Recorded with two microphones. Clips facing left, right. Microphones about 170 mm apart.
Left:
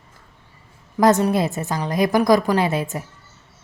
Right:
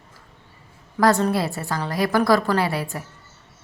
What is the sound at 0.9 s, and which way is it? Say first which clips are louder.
Speech: left 3 dB; 20° left (ahead or behind).